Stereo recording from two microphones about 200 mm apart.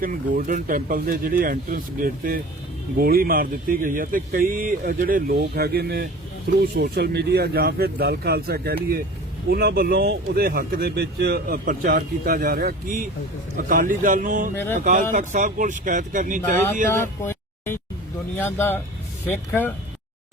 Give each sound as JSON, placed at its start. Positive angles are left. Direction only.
{"t": 0.0, "sound": "speech", "side_deg": -45}
{"t": 14.5, "sound": "speech", "side_deg": 10}
{"t": 14.8, "sound": "speech", "side_deg": -40}
{"t": 17.0, "sound": "a sound", "side_deg": 10}
{"t": 18.3, "sound": "speech", "side_deg": 10}